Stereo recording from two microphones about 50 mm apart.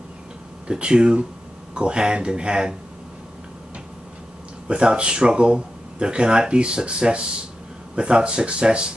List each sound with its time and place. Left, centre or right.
0.7 s speech: centre
4.6 s speech: right